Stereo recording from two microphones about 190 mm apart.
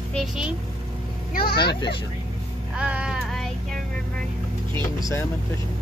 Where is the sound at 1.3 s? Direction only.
50° left (ahead or behind).